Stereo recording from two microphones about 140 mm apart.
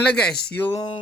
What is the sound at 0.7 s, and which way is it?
Speech, 30° left (ahead or behind).